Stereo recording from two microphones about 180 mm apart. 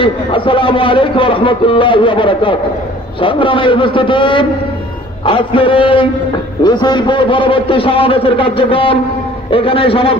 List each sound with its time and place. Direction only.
0.0 s a man's voice: 30° left (ahead or behind)